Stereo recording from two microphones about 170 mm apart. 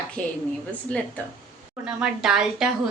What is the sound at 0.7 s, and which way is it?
Speech, 10° left (ahead or behind).